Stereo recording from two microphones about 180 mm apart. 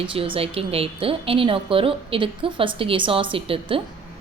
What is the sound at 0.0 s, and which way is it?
A woman's voice, 30° right (ahead or behind).